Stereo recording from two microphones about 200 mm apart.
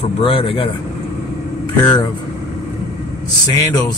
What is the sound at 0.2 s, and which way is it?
Speech, 25° left (ahead or behind).